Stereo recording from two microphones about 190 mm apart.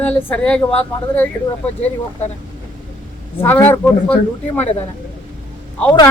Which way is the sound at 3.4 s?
10° left (ahead or behind).